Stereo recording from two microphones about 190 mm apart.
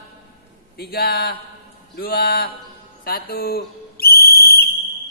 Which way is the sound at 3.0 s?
50° left (ahead or behind).